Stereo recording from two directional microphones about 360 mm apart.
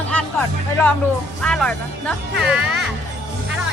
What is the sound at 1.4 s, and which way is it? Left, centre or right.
Speech, centre.